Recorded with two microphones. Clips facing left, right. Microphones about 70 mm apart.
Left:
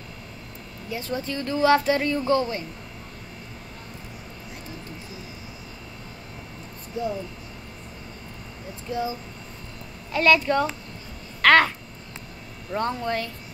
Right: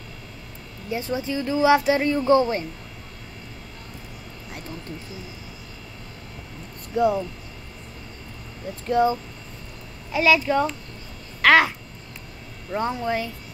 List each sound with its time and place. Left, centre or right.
0.8 s speech: right
1.2 s speech: centre
8.8 s speech: right
10.1 s speech: centre
12.7 s speech: centre